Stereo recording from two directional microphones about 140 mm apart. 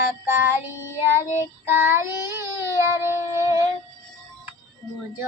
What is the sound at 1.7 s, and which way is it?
Child singing, 15° right (ahead or behind).